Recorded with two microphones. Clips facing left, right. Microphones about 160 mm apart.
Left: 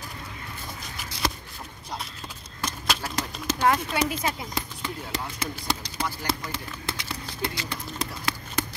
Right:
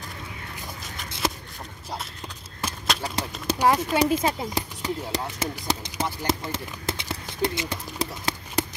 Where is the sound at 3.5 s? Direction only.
15° right (ahead or behind).